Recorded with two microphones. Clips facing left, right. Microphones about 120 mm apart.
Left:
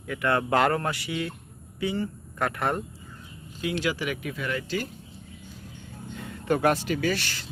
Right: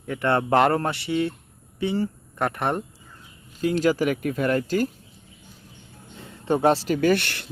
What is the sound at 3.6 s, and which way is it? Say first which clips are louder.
Speech: right 7 dB; 40° right (ahead or behind).